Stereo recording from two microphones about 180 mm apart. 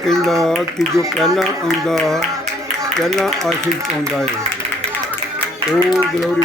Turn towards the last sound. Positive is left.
turn(degrees=0)  # may be behind; listen again after turning